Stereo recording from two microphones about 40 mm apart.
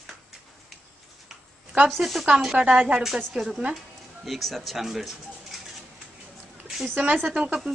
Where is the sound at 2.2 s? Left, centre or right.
Centre.